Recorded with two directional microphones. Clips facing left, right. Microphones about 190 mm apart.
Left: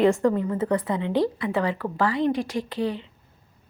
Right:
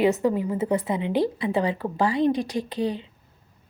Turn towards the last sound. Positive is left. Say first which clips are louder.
# even
turn(degrees=-15)  # may be behind; listen again after turning